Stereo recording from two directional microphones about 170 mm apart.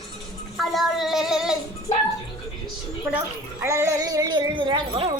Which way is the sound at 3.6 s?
20° right (ahead or behind).